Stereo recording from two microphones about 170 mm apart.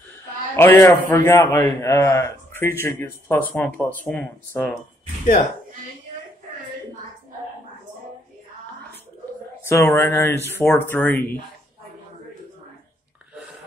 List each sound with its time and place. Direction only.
0.6 s a man's voice: 15° left (ahead or behind)
5.2 s speech: 45° left (ahead or behind)
9.7 s a man's voice: 15° left (ahead or behind)